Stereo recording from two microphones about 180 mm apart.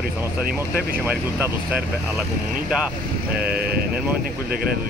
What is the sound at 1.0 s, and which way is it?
Speech, 10° right (ahead or behind).